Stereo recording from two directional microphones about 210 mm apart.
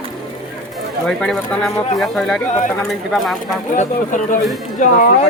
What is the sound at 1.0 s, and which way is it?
Speech, centre (ahead or behind).